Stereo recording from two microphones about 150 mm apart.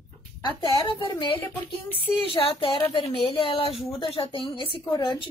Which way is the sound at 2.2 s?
35° left (ahead or behind).